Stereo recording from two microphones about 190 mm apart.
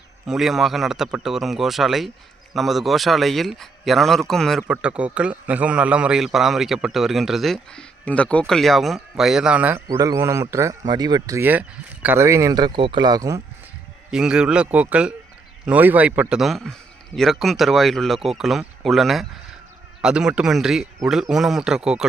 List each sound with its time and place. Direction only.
0.3 s a man's voice: centre (ahead or behind); by 13.4 s 20° right (ahead or behind)
14.1 s a man's voice: 5° right (ahead or behind)